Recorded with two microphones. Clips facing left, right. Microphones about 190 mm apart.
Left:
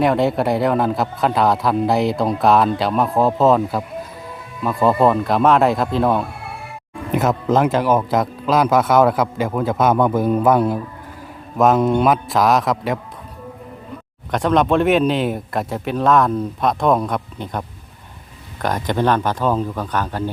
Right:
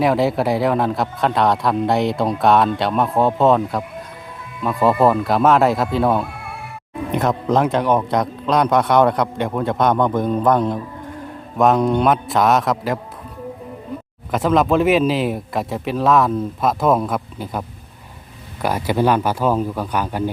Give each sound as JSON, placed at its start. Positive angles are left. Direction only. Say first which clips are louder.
{"t": 0.0, "sound": "a man's voice", "louder": "even", "side_deg": 0}
{"t": 14.3, "sound": "a man's voice", "louder": "even", "side_deg": -5}